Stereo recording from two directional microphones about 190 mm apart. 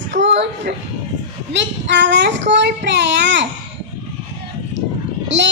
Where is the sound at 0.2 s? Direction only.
70° right (ahead or behind).